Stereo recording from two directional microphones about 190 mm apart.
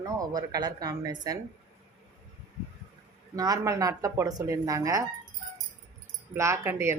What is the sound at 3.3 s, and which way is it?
Speech, 20° right (ahead or behind).